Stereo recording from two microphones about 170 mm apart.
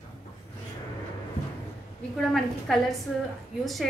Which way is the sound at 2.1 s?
Centre (ahead or behind).